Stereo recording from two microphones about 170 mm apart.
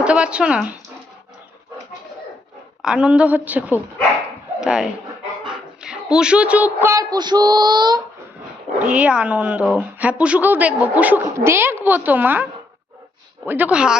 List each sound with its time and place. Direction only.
0.0 s a woman's voice: 5° right (ahead or behind)
2.8 s a woman's voice: 5° right (ahead or behind); by 8.0 s 25° right (ahead or behind)
8.8 s a woman's voice: 5° right (ahead or behind)